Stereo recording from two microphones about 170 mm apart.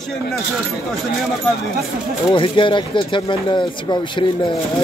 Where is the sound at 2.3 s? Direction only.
30° left (ahead or behind).